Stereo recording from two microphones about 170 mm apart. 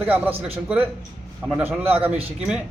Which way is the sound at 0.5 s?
10° right (ahead or behind).